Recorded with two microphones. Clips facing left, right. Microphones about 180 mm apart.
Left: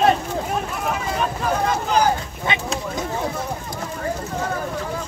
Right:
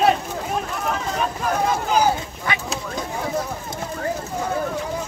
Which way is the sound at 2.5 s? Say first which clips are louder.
Left 2 dB; 25° left (ahead or behind).